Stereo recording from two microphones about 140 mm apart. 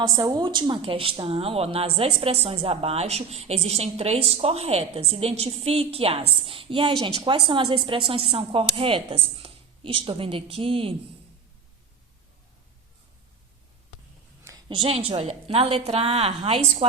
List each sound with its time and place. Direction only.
0.2 s a woman's voice: 30° right (ahead or behind)
14.8 s a woman's voice: 45° right (ahead or behind)